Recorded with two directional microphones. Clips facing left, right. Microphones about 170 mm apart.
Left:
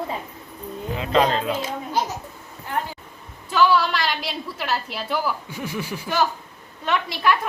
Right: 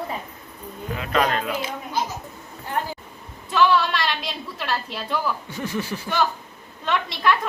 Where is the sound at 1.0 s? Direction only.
25° left (ahead or behind).